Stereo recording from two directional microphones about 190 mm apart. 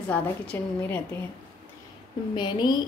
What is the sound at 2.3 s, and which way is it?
Speech, 25° left (ahead or behind).